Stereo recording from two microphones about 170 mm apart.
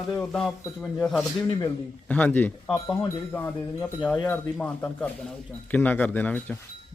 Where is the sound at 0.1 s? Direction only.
5° left (ahead or behind).